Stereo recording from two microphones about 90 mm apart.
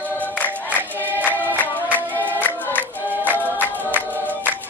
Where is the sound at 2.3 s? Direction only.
20° left (ahead or behind).